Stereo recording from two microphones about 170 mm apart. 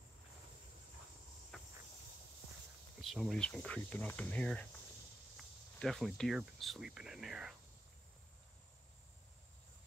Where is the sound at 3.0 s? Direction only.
Centre (ahead or behind).